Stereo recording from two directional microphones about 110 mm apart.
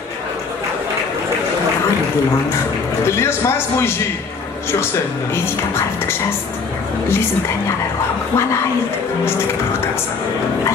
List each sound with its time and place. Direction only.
3.2 s a man's voice: 20° left (ahead or behind)